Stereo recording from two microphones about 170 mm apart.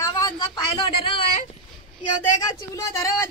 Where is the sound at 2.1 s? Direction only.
20° left (ahead or behind).